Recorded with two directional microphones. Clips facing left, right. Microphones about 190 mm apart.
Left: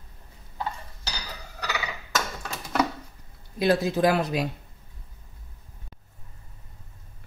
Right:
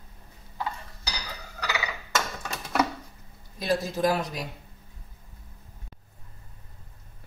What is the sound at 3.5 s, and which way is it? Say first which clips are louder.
Speech: left 5 dB; 65° left (ahead or behind).